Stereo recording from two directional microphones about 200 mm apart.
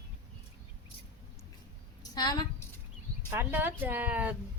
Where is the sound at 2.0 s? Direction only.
20° left (ahead or behind).